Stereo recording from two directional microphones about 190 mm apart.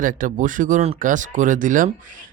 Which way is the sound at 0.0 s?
45° right (ahead or behind).